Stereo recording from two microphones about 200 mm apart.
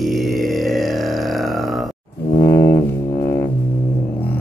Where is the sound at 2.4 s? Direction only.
15° left (ahead or behind).